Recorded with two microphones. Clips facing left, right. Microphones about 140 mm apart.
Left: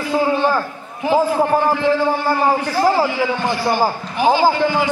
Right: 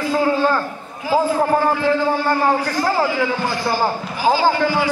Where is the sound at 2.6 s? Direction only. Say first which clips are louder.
Left 3 dB; 20° left (ahead or behind).